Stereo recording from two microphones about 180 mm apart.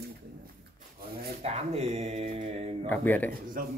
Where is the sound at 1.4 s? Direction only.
35° right (ahead or behind).